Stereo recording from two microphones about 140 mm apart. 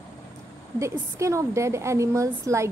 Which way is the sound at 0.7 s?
20° right (ahead or behind).